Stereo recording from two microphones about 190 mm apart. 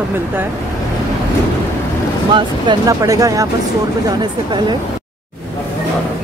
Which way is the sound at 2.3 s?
25° right (ahead or behind).